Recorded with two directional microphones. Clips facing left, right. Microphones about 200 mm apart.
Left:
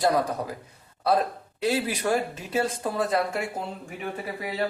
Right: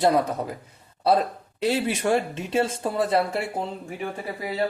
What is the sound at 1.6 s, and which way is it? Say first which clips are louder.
Speech: right 2 dB; 30° right (ahead or behind).